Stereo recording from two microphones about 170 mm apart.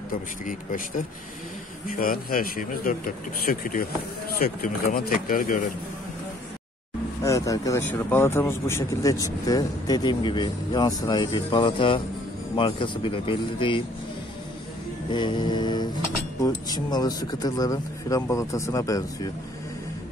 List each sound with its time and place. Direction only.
0.5 s speech: 50° left (ahead or behind)
7.2 s speech: 20° left (ahead or behind)
15.1 s speech: 25° left (ahead or behind)